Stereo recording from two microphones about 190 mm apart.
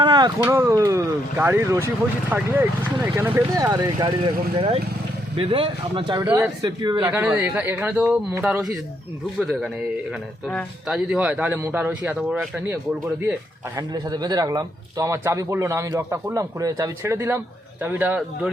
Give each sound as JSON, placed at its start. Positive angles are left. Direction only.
{"t": 0.0, "sound": "a sound", "side_deg": -25}
{"t": 0.4, "sound": "a man's voice", "side_deg": -15}
{"t": 4.5, "sound": "speech", "side_deg": -30}
{"t": 6.2, "sound": "speech", "side_deg": -15}
{"t": 7.0, "sound": "a man's voice", "side_deg": -10}
{"t": 13.7, "sound": "a man's voice", "side_deg": -20}